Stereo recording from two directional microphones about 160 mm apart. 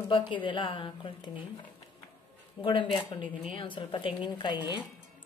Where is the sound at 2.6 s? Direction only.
30° left (ahead or behind).